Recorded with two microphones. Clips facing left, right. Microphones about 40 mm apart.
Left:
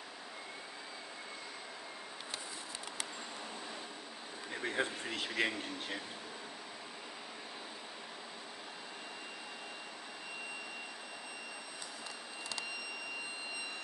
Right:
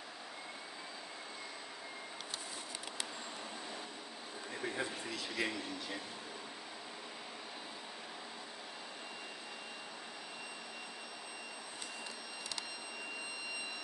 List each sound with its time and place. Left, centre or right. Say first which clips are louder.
4.6 s speech: left 4 dB; left